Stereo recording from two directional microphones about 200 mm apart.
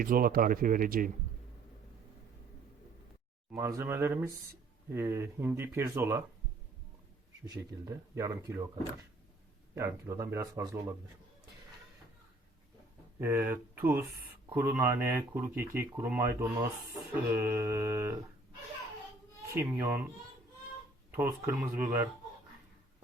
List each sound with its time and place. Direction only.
0.0 s speech: 45° right (ahead or behind)
3.5 s speech: 15° right (ahead or behind)
7.5 s speech: 15° right (ahead or behind)
9.7 s speech: 15° right (ahead or behind)
13.1 s speech: 10° right (ahead or behind)
19.5 s speech: 10° right (ahead or behind)